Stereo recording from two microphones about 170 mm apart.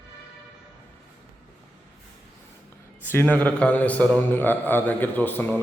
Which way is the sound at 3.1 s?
10° left (ahead or behind).